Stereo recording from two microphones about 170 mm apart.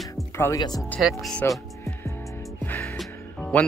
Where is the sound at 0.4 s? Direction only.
20° left (ahead or behind).